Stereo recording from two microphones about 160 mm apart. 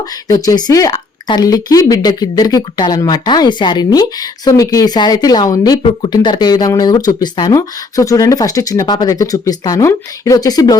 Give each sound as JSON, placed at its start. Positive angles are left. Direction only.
{"t": 0.3, "sound": "speech", "side_deg": 20}